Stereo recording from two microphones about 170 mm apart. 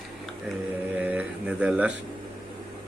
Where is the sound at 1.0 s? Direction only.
10° right (ahead or behind).